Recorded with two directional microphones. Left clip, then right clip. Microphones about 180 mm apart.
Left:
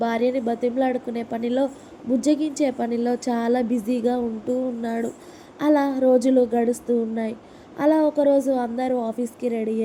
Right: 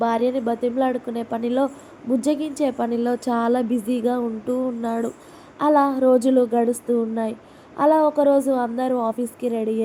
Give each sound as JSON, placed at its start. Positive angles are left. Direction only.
{"t": 0.0, "sound": "a woman's voice", "side_deg": 0}
{"t": 7.8, "sound": "a woman's voice", "side_deg": 0}